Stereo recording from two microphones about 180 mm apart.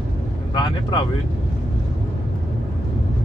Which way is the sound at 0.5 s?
25° left (ahead or behind).